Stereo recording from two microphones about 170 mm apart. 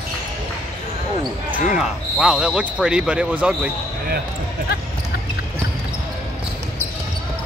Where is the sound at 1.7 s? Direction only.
5° right (ahead or behind).